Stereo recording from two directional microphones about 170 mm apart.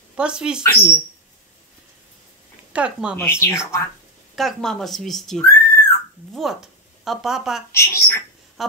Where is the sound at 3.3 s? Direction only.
15° left (ahead or behind).